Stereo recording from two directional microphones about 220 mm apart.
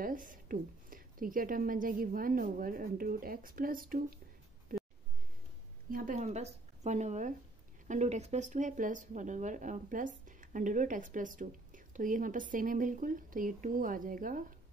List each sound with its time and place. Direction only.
0.0 s speech: 40° right (ahead or behind)
5.9 s speech: 40° right (ahead or behind)